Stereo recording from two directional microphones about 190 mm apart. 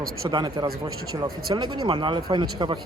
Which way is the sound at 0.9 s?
90° right.